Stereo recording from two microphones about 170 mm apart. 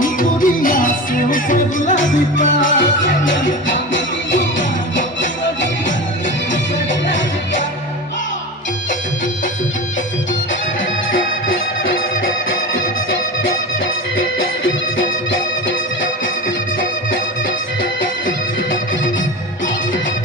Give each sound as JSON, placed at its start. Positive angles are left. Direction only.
{"t": 0.0, "sound": "music", "side_deg": 55}